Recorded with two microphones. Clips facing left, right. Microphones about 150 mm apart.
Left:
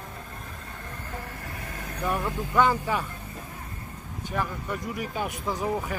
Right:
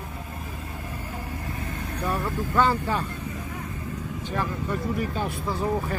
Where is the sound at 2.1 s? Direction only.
15° left (ahead or behind).